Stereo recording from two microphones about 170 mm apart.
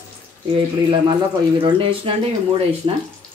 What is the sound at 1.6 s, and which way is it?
Speech, 30° right (ahead or behind).